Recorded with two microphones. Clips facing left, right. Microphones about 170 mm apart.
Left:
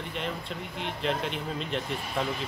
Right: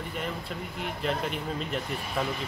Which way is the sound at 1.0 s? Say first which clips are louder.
Even; 5° right (ahead or behind).